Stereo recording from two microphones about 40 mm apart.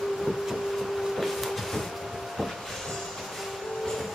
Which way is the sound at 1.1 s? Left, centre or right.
Centre.